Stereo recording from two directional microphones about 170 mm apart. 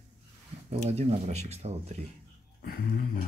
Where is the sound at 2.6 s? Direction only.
60° left (ahead or behind).